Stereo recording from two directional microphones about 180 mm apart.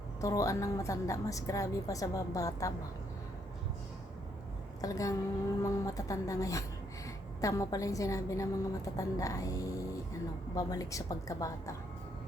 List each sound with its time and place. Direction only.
0.2 s a woman's voice: 20° left (ahead or behind)
4.8 s a woman's voice: 20° left (ahead or behind)